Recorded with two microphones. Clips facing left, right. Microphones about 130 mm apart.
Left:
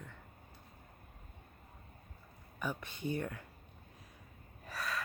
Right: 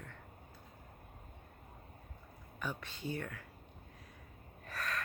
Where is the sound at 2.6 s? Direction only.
10° left (ahead or behind).